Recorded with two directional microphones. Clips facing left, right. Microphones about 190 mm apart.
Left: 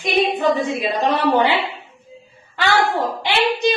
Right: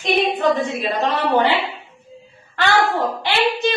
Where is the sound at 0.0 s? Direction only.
10° left (ahead or behind).